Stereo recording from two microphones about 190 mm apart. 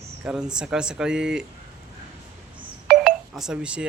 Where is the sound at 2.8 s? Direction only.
5° right (ahead or behind).